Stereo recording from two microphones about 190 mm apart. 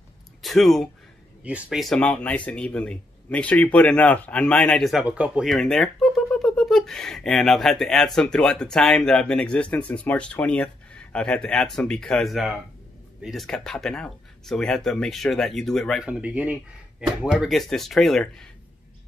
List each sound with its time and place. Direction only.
0.4 s speech: centre (ahead or behind)